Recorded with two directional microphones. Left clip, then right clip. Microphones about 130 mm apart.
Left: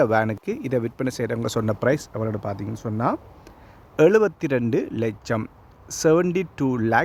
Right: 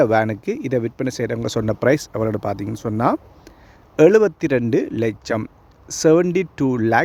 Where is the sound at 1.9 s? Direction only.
65° right (ahead or behind).